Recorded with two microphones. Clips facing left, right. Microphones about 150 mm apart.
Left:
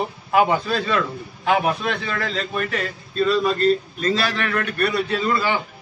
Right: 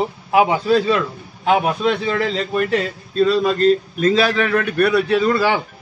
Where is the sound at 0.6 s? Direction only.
25° right (ahead or behind).